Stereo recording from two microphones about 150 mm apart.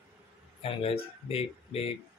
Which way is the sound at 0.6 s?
40° left (ahead or behind).